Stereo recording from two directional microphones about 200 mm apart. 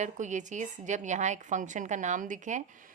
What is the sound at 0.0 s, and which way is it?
Speech, 35° right (ahead or behind).